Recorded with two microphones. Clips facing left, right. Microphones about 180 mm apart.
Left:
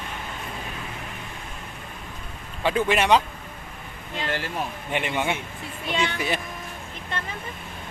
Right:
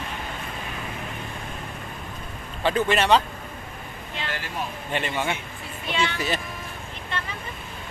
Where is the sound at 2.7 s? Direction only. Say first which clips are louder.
Even; 10° left (ahead or behind).